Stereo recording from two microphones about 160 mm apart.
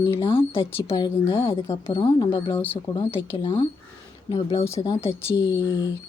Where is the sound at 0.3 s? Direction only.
35° left (ahead or behind).